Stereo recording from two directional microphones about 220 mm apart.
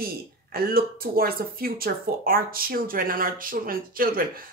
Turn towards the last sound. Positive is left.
turn(degrees=-40)  # may be behind; listen again after turning